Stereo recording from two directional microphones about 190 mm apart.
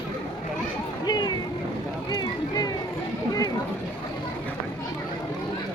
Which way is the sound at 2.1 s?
20° left (ahead or behind).